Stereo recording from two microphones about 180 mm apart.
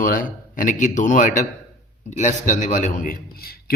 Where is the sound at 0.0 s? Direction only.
50° left (ahead or behind).